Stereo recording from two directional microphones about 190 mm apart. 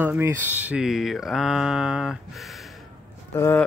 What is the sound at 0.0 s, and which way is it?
Speech, 10° right (ahead or behind).